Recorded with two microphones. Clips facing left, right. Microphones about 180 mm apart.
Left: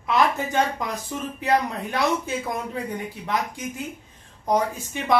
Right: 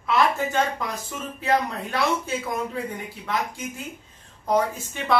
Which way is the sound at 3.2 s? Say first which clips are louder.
Even; 15° left (ahead or behind).